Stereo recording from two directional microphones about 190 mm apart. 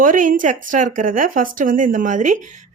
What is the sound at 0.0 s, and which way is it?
Speech, 45° right (ahead or behind).